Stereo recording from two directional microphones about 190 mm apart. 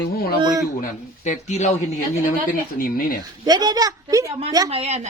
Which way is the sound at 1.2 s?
40° left (ahead or behind).